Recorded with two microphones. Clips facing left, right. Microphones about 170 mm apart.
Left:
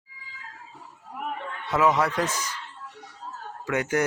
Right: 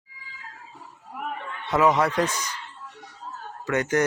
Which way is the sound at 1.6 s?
Centre (ahead or behind).